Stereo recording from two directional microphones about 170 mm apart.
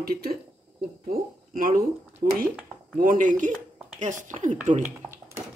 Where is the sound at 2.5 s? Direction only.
5° right (ahead or behind).